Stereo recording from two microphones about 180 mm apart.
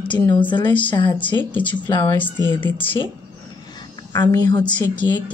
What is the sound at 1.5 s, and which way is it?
Speech, 10° left (ahead or behind).